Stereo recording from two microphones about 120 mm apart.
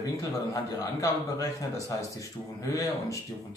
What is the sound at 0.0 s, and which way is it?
Speech, 30° left (ahead or behind).